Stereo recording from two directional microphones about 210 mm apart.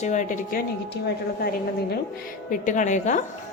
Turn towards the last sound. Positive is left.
turn(degrees=35)  # may be behind; listen again after turning